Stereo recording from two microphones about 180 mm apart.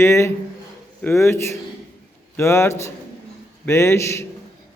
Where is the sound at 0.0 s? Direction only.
15° left (ahead or behind).